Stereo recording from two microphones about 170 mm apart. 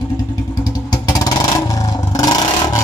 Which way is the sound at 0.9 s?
20° left (ahead or behind).